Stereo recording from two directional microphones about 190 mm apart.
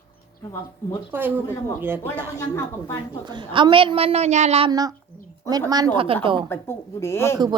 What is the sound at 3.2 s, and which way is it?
A woman's voice, 25° right (ahead or behind).